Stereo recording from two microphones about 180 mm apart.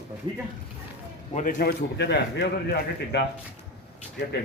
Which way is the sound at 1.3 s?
45° left (ahead or behind).